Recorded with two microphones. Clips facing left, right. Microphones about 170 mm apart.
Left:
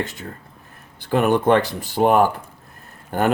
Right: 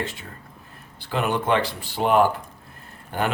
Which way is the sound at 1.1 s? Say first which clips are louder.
Left 6 dB; 50° left (ahead or behind).